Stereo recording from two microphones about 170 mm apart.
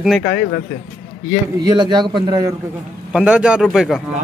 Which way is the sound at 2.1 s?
25° right (ahead or behind).